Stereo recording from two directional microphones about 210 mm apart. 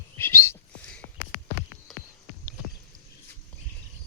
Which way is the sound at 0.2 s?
10° left (ahead or behind).